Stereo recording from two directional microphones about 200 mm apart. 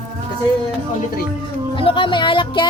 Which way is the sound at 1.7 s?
25° left (ahead or behind).